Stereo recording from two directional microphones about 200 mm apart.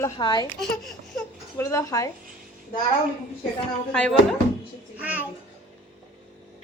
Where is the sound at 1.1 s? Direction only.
15° left (ahead or behind).